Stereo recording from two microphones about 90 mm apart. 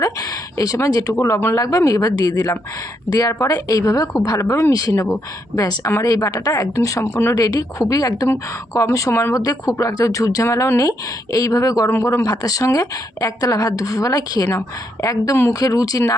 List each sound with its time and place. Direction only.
0.0 s speech: 40° left (ahead or behind)
1.5 s a woman's voice: 40° left (ahead or behind)
7.3 s a woman's voice: 40° left (ahead or behind)